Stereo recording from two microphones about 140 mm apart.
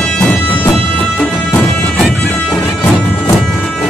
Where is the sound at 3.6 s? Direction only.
5° left (ahead or behind).